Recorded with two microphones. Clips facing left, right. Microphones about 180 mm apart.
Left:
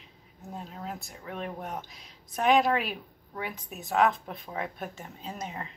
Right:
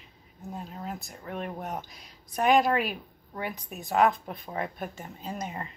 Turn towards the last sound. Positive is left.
turn(degrees=-5)  # may be behind; listen again after turning